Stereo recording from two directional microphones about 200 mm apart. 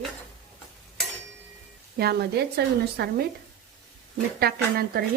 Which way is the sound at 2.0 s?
55° right (ahead or behind).